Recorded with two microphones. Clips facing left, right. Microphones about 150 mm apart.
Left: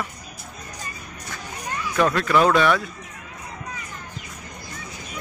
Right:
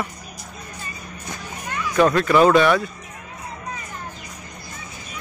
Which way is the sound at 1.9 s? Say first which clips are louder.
Right 4 dB; 5° right (ahead or behind).